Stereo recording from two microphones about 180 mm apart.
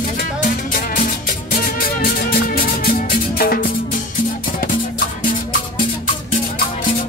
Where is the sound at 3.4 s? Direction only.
55° left (ahead or behind).